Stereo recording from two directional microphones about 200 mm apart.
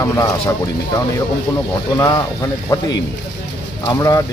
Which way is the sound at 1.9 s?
20° left (ahead or behind).